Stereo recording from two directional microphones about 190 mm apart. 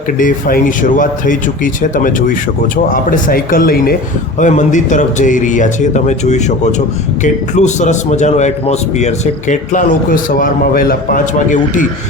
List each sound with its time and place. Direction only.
0.2 s a man's voice: 45° left (ahead or behind)